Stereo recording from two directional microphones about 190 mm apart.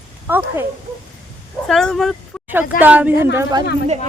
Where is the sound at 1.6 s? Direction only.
Centre (ahead or behind).